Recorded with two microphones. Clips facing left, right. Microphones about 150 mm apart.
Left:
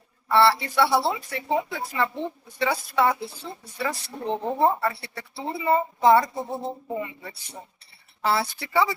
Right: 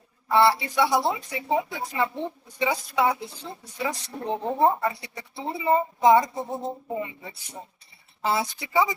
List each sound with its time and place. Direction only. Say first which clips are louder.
0.3 s a woman's voice: left 1 dB; 15° right (ahead or behind)